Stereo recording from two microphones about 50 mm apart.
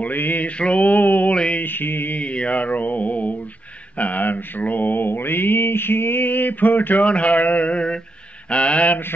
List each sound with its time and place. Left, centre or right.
0.0 s mantra: left
0.6 s mantra: left
1.3 s a sound: centre
1.6 s mantra: left
2.1 s mantra: left
7.1 s a sound: left